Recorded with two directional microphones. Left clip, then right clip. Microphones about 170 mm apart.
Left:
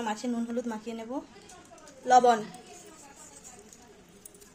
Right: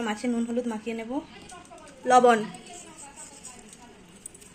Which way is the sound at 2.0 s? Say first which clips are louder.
Right 2 dB; 15° right (ahead or behind).